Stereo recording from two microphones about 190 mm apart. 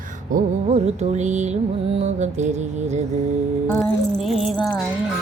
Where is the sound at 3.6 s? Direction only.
10° left (ahead or behind).